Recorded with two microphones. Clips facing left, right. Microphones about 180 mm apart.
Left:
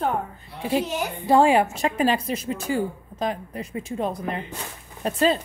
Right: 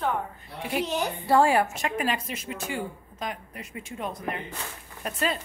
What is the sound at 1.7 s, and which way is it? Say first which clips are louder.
A woman's voice: left 6 dB; 30° left (ahead or behind).